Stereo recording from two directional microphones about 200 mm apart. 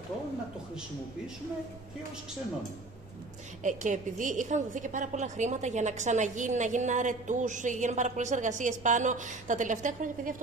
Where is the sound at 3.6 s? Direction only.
40° right (ahead or behind).